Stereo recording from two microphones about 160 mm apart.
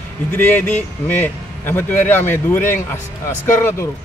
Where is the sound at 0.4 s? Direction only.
10° left (ahead or behind).